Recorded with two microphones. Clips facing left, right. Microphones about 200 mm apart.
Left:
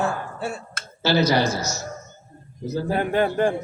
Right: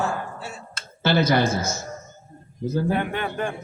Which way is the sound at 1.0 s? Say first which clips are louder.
Even; 50° right (ahead or behind).